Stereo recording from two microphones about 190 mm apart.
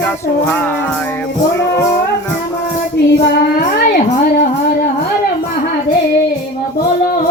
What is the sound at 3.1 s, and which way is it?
Child singing, 60° left (ahead or behind).